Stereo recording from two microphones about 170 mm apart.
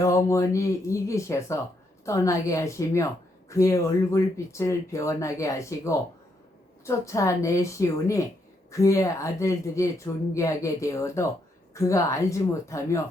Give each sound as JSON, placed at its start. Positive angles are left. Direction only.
{"t": 0.0, "sound": "a woman's voice", "side_deg": 15}